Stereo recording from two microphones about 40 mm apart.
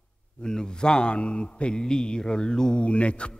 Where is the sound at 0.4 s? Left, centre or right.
Centre.